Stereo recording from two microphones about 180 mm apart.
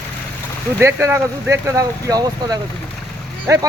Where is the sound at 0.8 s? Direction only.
15° right (ahead or behind).